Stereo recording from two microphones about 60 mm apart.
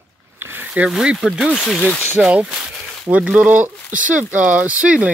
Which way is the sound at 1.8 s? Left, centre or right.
Left.